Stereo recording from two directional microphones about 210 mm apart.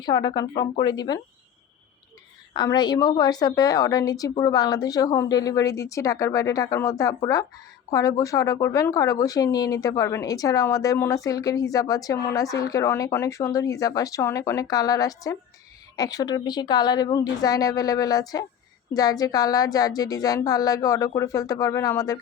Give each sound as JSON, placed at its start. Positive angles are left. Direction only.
{"t": 0.0, "sound": "speech", "side_deg": 20}
{"t": 2.5, "sound": "speech", "side_deg": 20}